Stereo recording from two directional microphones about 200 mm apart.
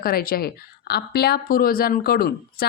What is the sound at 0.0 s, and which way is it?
Speech, 50° left (ahead or behind).